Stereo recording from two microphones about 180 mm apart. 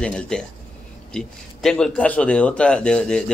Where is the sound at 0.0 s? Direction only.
5° left (ahead or behind).